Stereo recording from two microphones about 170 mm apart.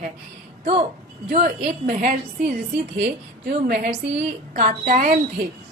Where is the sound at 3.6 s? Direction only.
65° right (ahead or behind).